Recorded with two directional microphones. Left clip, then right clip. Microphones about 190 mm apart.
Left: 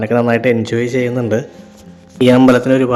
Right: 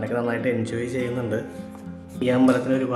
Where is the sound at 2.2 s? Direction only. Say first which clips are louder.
Left 11 dB; 60° left (ahead or behind).